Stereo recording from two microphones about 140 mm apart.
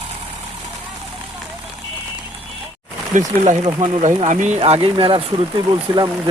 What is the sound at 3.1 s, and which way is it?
Speech, 65° right (ahead or behind).